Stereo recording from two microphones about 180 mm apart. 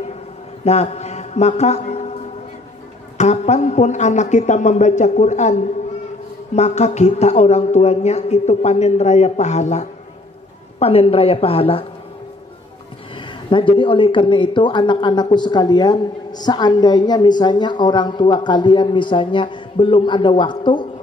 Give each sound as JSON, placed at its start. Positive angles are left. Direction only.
{"t": 0.7, "sound": "speech", "side_deg": 35}
{"t": 3.2, "sound": "speech", "side_deg": 40}
{"t": 13.5, "sound": "a woman's voice", "side_deg": 30}